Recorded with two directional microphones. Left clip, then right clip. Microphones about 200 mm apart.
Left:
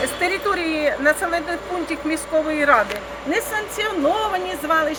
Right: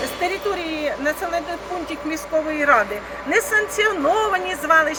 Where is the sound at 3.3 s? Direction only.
20° left (ahead or behind).